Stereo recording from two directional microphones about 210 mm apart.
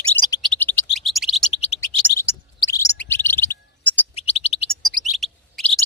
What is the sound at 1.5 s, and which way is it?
Bird, 30° left (ahead or behind).